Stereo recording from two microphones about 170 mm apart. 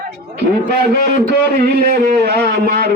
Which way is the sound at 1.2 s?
65° right (ahead or behind).